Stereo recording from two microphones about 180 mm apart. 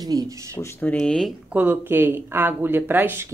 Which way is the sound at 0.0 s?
20° right (ahead or behind).